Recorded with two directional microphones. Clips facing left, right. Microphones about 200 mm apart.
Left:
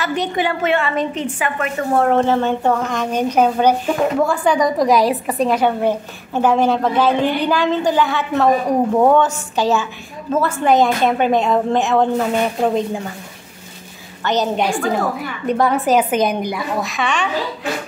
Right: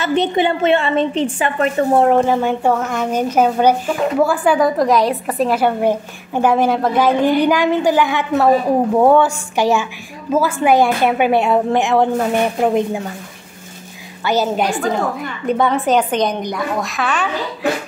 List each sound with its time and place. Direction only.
0.0 s a woman's voice: 25° right (ahead or behind)
2.0 s a woman's voice: 10° right (ahead or behind)
14.2 s a woman's voice: 10° right (ahead or behind)